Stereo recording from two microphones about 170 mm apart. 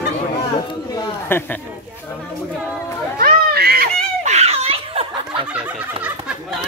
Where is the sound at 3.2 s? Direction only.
65° right (ahead or behind).